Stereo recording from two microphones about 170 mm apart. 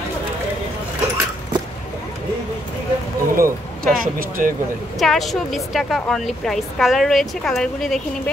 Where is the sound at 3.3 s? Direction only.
55° right (ahead or behind).